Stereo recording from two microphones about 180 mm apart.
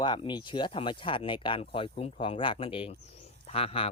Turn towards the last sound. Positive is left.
turn(degrees=30)  # may be behind; listen again after turning